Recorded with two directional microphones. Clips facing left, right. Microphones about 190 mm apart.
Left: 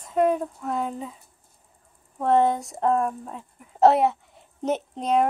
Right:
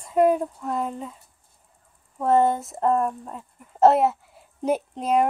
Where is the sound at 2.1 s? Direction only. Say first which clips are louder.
Right 1 dB; centre (ahead or behind).